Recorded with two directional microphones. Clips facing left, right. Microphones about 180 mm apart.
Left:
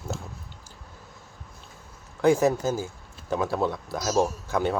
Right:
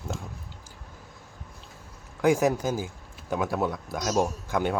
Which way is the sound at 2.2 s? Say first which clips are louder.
Left 2 dB; 10° right (ahead or behind).